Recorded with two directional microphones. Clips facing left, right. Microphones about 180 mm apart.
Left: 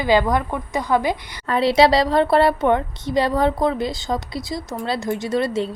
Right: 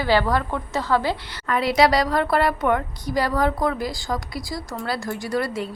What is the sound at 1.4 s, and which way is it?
Speech, 30° left (ahead or behind).